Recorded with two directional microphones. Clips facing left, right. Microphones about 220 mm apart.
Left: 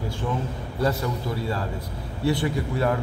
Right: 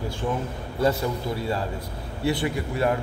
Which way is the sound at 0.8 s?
20° right (ahead or behind).